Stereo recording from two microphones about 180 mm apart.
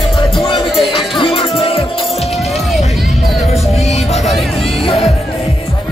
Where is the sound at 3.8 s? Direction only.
40° left (ahead or behind).